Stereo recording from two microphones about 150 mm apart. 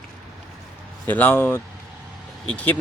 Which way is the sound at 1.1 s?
10° left (ahead or behind).